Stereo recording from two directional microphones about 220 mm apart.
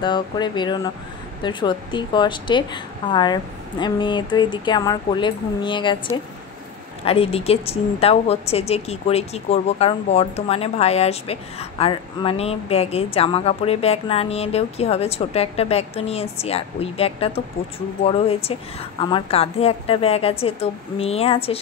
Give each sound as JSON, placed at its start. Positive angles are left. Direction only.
{"t": 0.0, "sound": "speech", "side_deg": 20}